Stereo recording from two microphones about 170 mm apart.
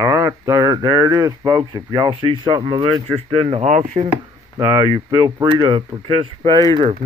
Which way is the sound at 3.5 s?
40° right (ahead or behind).